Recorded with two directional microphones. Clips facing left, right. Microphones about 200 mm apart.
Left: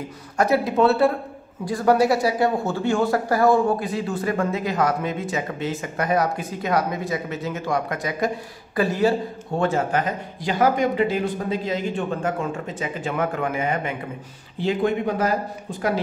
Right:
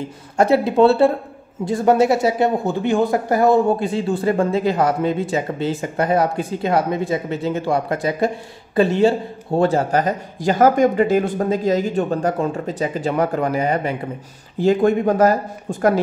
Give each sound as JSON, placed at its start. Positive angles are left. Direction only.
{"t": 0.4, "sound": "a man's voice", "side_deg": -30}